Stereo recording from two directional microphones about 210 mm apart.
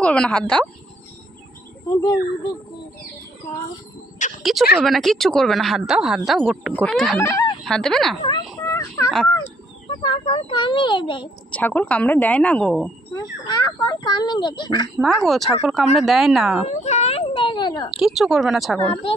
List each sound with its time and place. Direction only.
0.0 s speech: 5° left (ahead or behind)
1.9 s a woman's voice: 15° left (ahead or behind)
4.4 s speech: centre (ahead or behind)
7.2 s a woman's voice: 15° left (ahead or behind)
7.6 s speech: centre (ahead or behind)
8.6 s a sound: 15° left (ahead or behind)
9.8 s speech: 25° left (ahead or behind)
11.5 s a woman's voice: 5° left (ahead or behind)
13.1 s speech: 20° left (ahead or behind)
15.0 s speech: centre (ahead or behind)
16.6 s speech: 30° left (ahead or behind)
17.9 s speech: centre (ahead or behind)